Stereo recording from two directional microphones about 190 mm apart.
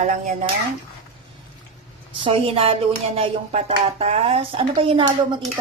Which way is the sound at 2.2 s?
30° right (ahead or behind).